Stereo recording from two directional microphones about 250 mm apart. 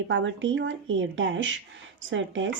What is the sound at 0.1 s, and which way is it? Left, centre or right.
Speech, right.